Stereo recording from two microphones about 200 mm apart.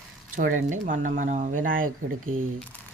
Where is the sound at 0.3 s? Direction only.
40° right (ahead or behind).